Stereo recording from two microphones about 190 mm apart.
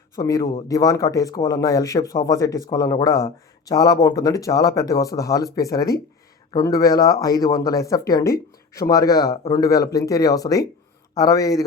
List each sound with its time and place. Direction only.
0.2 s speech: 20° left (ahead or behind)